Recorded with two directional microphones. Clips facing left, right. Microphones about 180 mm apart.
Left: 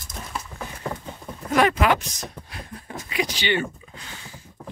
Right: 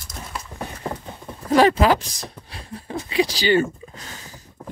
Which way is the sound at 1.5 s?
30° right (ahead or behind).